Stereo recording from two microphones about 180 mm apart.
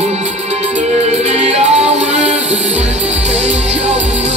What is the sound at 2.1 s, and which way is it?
Music, 5° right (ahead or behind).